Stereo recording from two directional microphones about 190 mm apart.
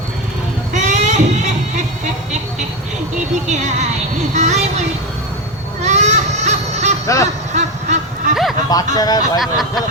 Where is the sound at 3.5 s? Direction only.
40° right (ahead or behind).